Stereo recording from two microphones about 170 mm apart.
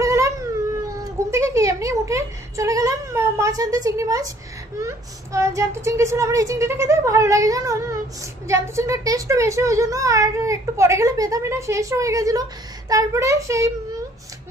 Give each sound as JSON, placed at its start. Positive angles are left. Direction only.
{"t": 0.0, "sound": "a sound", "side_deg": -20}
{"t": 4.7, "sound": "child singing", "side_deg": -15}
{"t": 8.5, "sound": "a child's voice", "side_deg": -15}
{"t": 12.9, "sound": "child singing", "side_deg": -20}